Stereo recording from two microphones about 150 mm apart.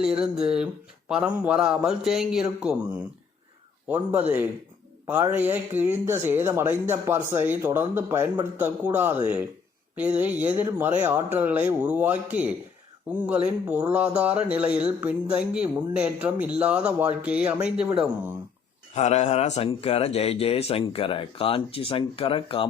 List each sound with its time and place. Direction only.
0.0 s speech: 5° right (ahead or behind)
18.9 s speech: 50° left (ahead or behind)